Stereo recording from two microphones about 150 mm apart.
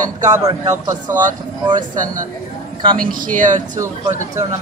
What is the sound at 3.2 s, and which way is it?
Speech, 60° right (ahead or behind).